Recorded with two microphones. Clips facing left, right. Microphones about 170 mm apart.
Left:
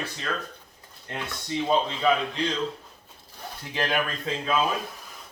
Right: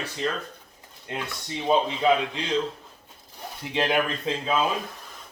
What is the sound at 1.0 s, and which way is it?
Speech, 15° right (ahead or behind).